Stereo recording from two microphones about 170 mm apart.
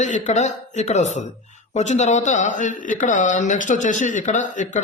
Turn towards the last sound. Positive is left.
turn(degrees=45)  # may be behind; listen again after turning